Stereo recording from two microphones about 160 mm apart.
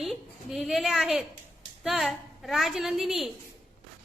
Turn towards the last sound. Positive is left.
turn(degrees=0)  # may be behind; listen again after turning